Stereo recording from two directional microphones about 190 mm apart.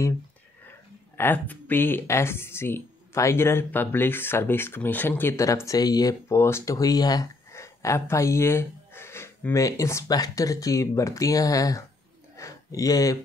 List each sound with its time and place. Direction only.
1.1 s speech: 10° left (ahead or behind)